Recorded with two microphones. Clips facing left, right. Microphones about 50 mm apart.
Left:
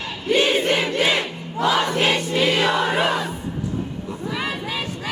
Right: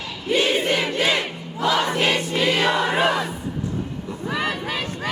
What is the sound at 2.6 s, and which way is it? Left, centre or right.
Crowd, right.